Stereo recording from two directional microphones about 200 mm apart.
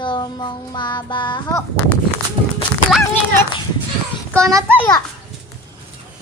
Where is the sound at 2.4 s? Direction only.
25° right (ahead or behind).